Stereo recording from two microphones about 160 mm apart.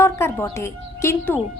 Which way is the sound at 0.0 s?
15° left (ahead or behind).